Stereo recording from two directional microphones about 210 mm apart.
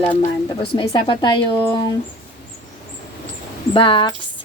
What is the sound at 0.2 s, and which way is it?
A woman's voice, 25° left (ahead or behind).